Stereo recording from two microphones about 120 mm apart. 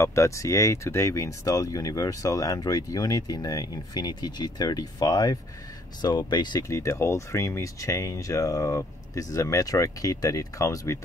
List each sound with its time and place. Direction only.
0.0 s speech: 25° left (ahead or behind)
6.7 s speech: 25° left (ahead or behind)